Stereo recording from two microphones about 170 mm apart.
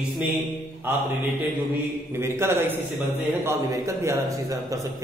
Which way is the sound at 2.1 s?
15° right (ahead or behind).